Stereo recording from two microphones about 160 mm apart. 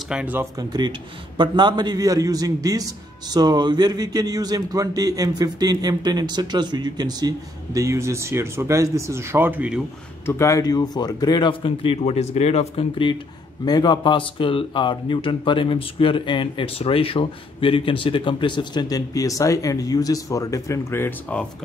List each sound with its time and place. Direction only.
0.1 s speech: 10° right (ahead or behind)
0.6 s a man's voice: 30° right (ahead or behind); by 9.8 s 10° right (ahead or behind)
10.2 s a man's voice: 20° left (ahead or behind)